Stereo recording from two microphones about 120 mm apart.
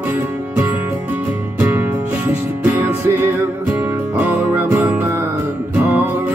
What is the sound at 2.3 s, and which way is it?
Music, 10° right (ahead or behind).